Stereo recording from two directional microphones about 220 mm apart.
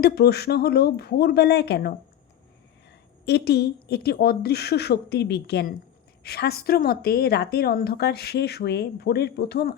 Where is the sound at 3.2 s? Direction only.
50° left (ahead or behind).